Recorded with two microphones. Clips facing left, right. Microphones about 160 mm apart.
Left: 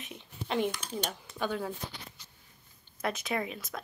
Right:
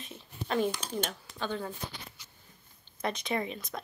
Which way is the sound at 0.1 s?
15° left (ahead or behind).